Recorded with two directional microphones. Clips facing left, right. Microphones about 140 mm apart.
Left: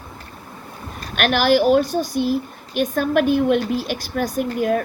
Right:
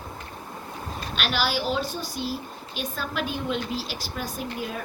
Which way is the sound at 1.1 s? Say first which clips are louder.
Left 11 dB; 55° left (ahead or behind).